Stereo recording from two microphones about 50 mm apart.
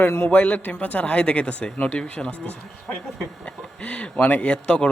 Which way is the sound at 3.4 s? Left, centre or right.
Left.